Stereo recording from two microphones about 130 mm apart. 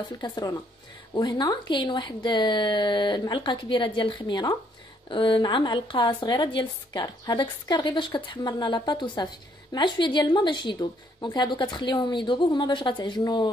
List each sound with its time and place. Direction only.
0.2 s a woman's voice: 35° left (ahead or behind)